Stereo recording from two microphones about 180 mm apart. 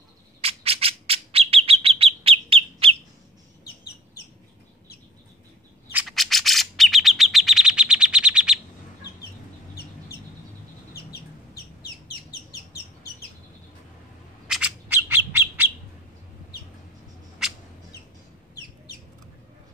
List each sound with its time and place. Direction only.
0.4 s bird: 30° right (ahead or behind)
5.9 s chirp: 5° right (ahead or behind)
11.0 s chicken: 60° left (ahead or behind)
14.5 s bird: 10° right (ahead or behind)
17.4 s rodents: 5° right (ahead or behind)